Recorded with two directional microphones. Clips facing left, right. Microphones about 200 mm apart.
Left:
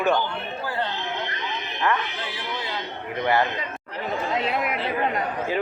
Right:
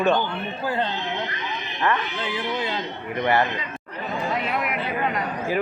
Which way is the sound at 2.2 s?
25° right (ahead or behind).